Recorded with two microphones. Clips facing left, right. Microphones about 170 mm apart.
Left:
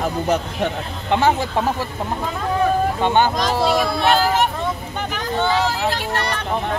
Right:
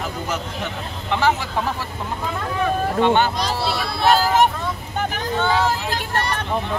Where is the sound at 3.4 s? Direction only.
45° left (ahead or behind).